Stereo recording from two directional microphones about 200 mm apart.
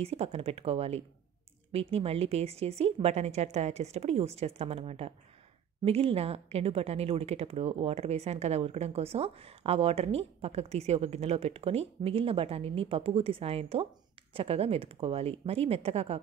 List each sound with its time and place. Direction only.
0.0 s a woman's voice: 30° right (ahead or behind)